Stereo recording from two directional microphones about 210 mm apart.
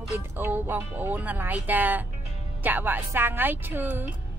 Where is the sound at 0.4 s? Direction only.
10° right (ahead or behind).